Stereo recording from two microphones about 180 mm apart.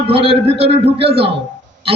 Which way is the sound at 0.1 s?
30° right (ahead or behind).